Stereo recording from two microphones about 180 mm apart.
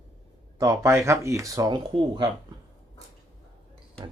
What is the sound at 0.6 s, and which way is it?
Speech, 20° right (ahead or behind).